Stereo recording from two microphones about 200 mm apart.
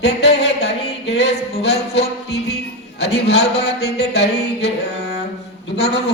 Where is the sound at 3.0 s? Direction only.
55° left (ahead or behind).